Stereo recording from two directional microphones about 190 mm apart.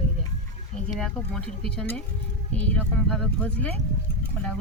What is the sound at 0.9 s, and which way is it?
Speech, 5° left (ahead or behind).